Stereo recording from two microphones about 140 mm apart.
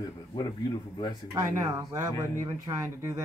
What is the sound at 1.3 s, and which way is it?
Speech, 20° right (ahead or behind).